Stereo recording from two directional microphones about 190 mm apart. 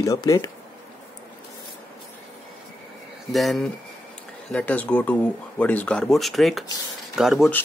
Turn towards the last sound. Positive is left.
turn(degrees=0)  # may be behind; listen again after turning